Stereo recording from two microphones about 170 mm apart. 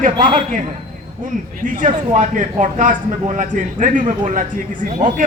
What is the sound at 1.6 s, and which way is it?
Speech, 50° right (ahead or behind).